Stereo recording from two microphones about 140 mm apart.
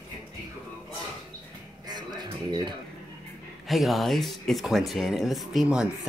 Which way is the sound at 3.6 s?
Centre (ahead or behind).